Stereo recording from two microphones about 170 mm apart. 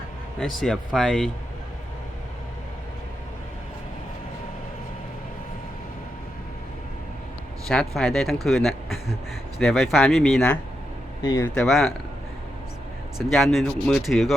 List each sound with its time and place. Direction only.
0.3 s speech: centre (ahead or behind)
7.7 s speech: 5° left (ahead or behind)
11.2 s speech: 20° left (ahead or behind)
11.4 s speech: 5° left (ahead or behind)
13.1 s speech: centre (ahead or behind)